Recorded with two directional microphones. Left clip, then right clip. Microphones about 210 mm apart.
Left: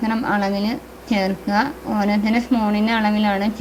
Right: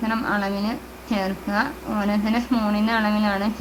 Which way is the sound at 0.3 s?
20° left (ahead or behind).